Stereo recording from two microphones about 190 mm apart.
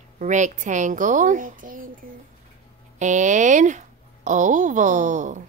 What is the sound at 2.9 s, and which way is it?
Speech, 40° right (ahead or behind).